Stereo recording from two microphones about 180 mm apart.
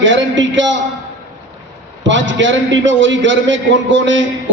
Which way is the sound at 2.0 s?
90° right.